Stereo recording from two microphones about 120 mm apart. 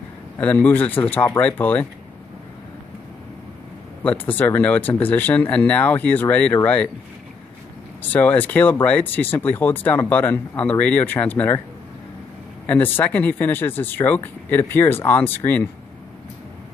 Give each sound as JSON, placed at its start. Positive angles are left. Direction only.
{"t": 0.4, "sound": "speech", "side_deg": 15}
{"t": 4.0, "sound": "speech", "side_deg": 15}
{"t": 8.1, "sound": "speech", "side_deg": 15}
{"t": 12.6, "sound": "speech", "side_deg": 15}